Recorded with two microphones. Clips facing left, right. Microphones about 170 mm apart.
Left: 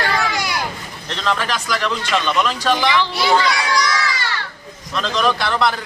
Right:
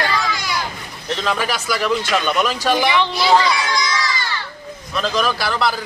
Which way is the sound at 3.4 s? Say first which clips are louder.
Left 1 dB; 65° left (ahead or behind).